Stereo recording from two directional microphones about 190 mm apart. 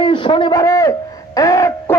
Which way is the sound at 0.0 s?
25° left (ahead or behind).